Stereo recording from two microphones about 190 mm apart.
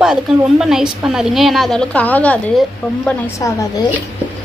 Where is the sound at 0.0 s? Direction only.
5° right (ahead or behind); by 3.8 s 15° left (ahead or behind).